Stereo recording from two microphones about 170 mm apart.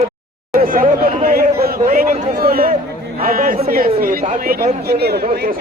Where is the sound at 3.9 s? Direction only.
55° right (ahead or behind).